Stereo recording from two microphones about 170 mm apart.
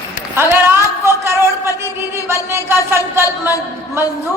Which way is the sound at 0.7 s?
15° right (ahead or behind).